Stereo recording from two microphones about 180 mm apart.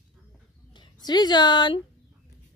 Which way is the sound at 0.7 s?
25° left (ahead or behind).